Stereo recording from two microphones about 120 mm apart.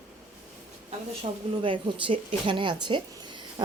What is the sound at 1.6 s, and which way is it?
A woman's voice, 45° right (ahead or behind).